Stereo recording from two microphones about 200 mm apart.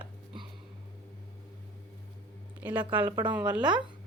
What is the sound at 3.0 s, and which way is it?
Speech, 25° right (ahead or behind).